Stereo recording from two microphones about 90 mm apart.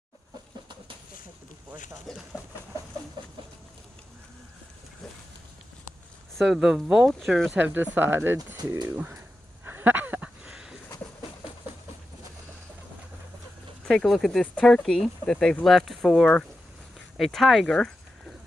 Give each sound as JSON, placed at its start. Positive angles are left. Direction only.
{"t": 2.1, "sound": "speech", "side_deg": 5}
{"t": 6.3, "sound": "speech", "side_deg": -5}
{"t": 7.5, "sound": "speech", "side_deg": -20}
{"t": 9.7, "sound": "a sound", "side_deg": -25}
{"t": 13.8, "sound": "speech", "side_deg": 5}